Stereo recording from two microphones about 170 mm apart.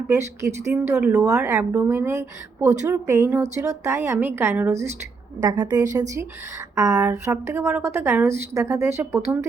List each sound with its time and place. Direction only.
0.1 s a woman's voice: 15° right (ahead or behind)